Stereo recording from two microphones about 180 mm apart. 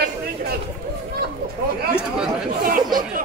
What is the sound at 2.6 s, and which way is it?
Chatter, 50° right (ahead or behind).